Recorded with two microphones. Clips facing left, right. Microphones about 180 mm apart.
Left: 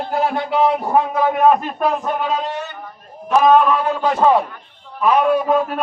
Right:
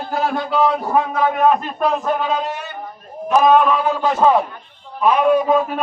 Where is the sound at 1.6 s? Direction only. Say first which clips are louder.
Even; 5° left (ahead or behind).